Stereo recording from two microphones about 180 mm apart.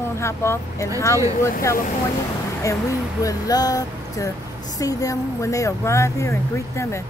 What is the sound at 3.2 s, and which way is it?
Speech, 20° left (ahead or behind).